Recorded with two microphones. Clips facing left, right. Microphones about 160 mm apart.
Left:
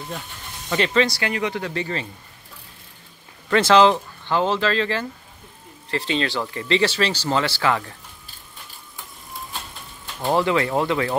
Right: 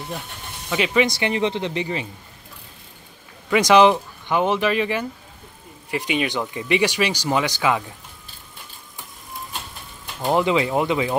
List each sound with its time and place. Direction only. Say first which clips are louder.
0.7 s speech: even; 5° right (ahead or behind)
1.0 s speech: right 3 dB; 20° right (ahead or behind)
3.4 s speech: right 1 dB; 10° right (ahead or behind)
10.2 s speech: right 1 dB; 15° right (ahead or behind)